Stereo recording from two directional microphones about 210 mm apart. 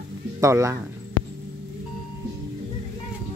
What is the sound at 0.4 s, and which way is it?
Speech, 15° right (ahead or behind).